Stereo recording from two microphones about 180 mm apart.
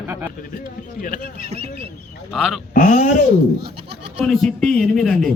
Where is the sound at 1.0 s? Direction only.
55° left (ahead or behind).